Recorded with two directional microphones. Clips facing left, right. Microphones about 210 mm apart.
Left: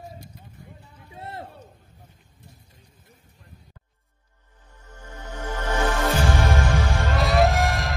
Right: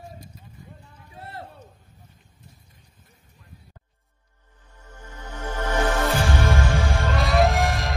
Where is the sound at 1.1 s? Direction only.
25° left (ahead or behind).